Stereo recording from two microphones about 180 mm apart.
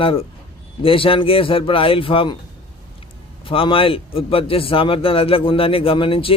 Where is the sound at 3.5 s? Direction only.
30° left (ahead or behind).